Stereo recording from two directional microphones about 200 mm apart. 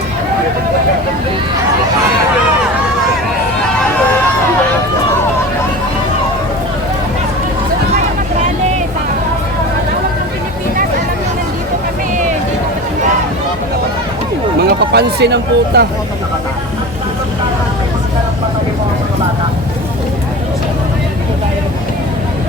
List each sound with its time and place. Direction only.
14.9 s speech: 55° right (ahead or behind)